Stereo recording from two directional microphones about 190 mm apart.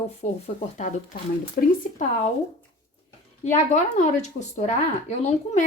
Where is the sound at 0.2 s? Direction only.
35° left (ahead or behind).